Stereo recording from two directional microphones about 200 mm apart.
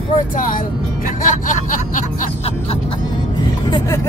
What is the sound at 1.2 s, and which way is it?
Music, 40° left (ahead or behind).